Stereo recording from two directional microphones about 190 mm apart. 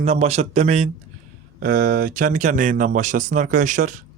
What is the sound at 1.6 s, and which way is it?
Speech, 50° right (ahead or behind).